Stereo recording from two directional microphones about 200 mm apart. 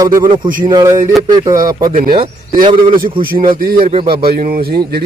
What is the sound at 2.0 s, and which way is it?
Speech, 25° right (ahead or behind).